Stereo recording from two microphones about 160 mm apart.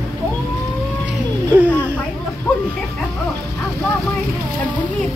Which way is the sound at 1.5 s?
10° right (ahead or behind).